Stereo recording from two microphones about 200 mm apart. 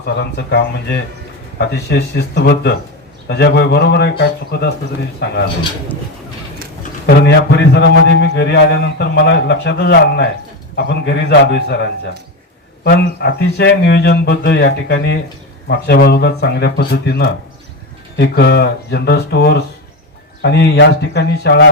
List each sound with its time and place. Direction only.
0.0 s a man's voice: 55° left (ahead or behind)
5.2 s a man's voice: 55° left (ahead or behind)
7.2 s a man's voice: 55° left (ahead or behind)